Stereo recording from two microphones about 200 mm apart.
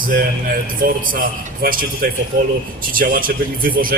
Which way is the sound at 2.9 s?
45° right (ahead or behind).